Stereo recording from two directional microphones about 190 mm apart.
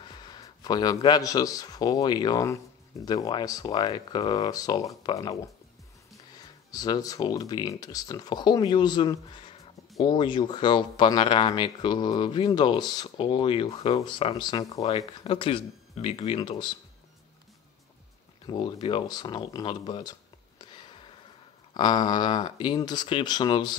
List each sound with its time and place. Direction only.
0.0 s speech: 20° left (ahead or behind)
18.5 s speech: 25° left (ahead or behind)